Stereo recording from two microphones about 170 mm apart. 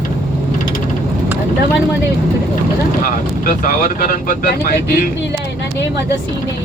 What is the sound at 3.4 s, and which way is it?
Speech, 55° left (ahead or behind).